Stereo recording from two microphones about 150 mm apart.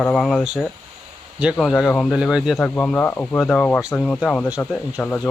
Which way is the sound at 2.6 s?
10° left (ahead or behind).